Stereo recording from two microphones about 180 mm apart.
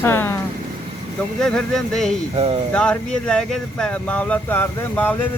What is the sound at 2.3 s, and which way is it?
Speech, 30° right (ahead or behind).